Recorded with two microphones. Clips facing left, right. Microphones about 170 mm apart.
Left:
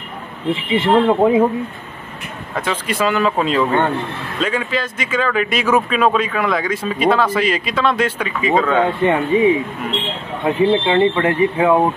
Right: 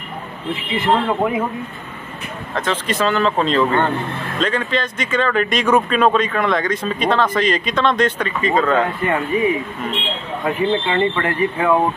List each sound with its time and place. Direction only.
0.5 s speech: 25° left (ahead or behind)
2.5 s speech: 10° left (ahead or behind)
9.1 s speech: 20° left (ahead or behind)
10.7 s speech: 10° left (ahead or behind)